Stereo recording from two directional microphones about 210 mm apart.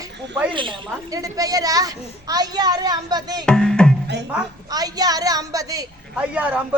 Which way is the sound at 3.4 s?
5° left (ahead or behind).